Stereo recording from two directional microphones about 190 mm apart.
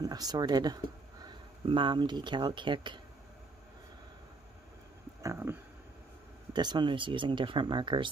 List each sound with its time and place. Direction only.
0.0 s speech: 20° right (ahead or behind)
5.2 s speech: 15° right (ahead or behind)